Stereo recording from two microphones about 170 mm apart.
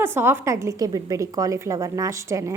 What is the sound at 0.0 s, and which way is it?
A woman's voice, 15° right (ahead or behind).